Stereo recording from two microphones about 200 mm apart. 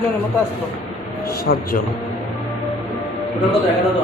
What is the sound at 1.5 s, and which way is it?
Speech, 50° left (ahead or behind).